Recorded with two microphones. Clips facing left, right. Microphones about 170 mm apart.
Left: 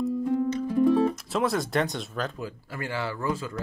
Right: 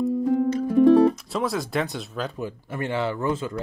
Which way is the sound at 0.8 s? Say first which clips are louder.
Right 7 dB; 75° right (ahead or behind).